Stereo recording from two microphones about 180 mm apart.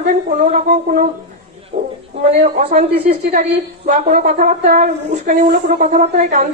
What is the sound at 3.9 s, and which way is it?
A woman's voice, 45° right (ahead or behind).